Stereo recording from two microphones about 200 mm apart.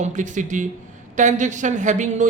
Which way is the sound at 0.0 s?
40° right (ahead or behind).